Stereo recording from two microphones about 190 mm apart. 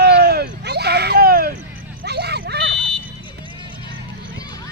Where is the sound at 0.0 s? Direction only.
55° right (ahead or behind).